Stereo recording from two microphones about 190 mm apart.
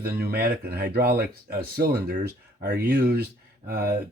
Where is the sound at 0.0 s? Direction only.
55° right (ahead or behind).